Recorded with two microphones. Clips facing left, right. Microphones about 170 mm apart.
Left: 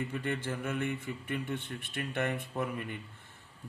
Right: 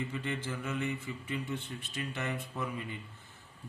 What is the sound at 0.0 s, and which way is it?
Speech, 60° left (ahead or behind).